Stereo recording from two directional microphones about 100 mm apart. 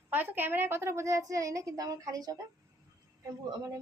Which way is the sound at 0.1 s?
20° right (ahead or behind).